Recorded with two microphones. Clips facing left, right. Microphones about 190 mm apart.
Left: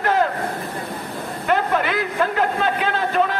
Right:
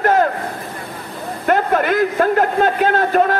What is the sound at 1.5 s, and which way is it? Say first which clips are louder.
A man's voice: right 4 dB; 50° right (ahead or behind).